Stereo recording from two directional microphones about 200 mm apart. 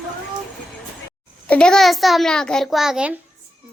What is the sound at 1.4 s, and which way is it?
A child's voice, 5° left (ahead or behind).